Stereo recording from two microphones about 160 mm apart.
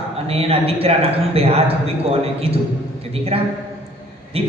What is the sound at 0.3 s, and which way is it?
A man's voice, 40° right (ahead or behind).